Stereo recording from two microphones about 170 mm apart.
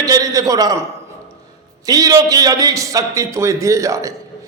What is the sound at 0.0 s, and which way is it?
Speech, 20° right (ahead or behind).